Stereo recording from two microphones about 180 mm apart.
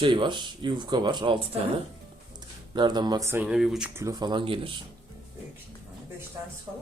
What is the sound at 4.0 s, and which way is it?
Speech, 20° right (ahead or behind).